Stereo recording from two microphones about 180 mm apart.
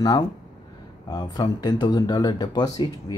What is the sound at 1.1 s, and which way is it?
Speech, 20° left (ahead or behind).